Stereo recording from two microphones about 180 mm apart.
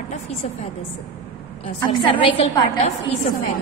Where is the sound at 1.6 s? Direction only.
30° left (ahead or behind).